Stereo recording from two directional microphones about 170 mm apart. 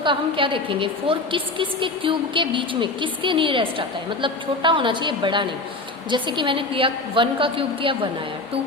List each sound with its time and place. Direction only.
0.0 s a woman's voice: 30° right (ahead or behind)